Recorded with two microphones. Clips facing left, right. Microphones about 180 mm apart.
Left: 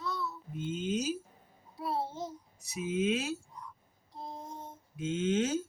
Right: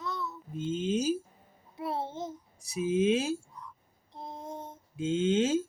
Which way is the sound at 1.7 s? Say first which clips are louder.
Right 1 dB; 20° right (ahead or behind).